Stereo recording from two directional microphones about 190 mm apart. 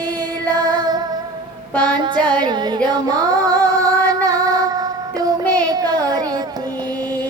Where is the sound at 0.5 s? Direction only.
20° right (ahead or behind).